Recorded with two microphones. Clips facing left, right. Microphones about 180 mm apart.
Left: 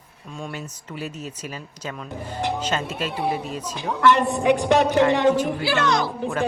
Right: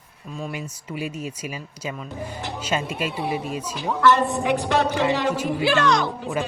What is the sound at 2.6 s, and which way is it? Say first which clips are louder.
Speech: even; 10° right (ahead or behind).